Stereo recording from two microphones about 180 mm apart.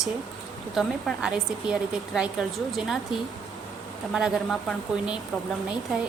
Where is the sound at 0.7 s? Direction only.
5° right (ahead or behind).